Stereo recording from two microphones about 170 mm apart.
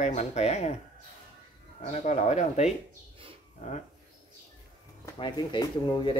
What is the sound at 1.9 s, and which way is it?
Speech, 40° left (ahead or behind).